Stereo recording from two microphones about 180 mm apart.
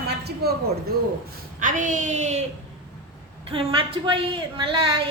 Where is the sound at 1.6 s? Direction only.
45° right (ahead or behind).